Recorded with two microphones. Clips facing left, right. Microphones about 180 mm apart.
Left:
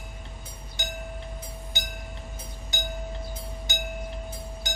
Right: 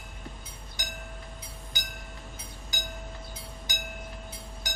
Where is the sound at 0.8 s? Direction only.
25° left (ahead or behind).